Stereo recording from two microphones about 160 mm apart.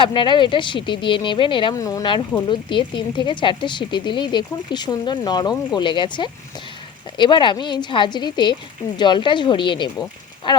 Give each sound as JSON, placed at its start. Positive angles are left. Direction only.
{"t": 0.0, "sound": "speech", "side_deg": 30}